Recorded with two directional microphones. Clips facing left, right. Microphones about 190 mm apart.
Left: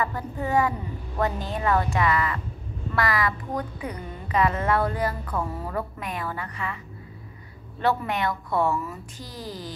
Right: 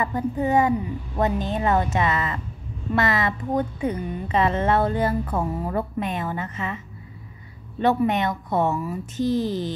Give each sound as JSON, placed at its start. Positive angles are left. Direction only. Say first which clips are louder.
{"t": 0.0, "sound": "a woman's voice", "louder": "right 5 dB", "side_deg": -20}
{"t": 7.8, "sound": "a woman's voice", "louder": "right 4 dB", "side_deg": -20}